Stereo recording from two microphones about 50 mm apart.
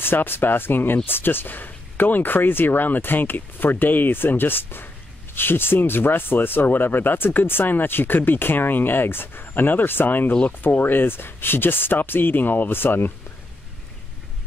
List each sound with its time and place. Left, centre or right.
0.0 s speech: left